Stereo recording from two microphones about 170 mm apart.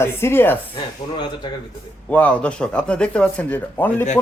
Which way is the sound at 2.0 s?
10° left (ahead or behind).